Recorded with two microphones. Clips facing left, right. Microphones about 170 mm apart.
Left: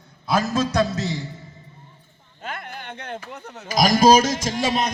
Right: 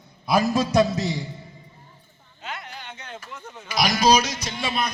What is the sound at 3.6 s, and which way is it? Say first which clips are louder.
A man's voice: left 5 dB; 45° left (ahead or behind).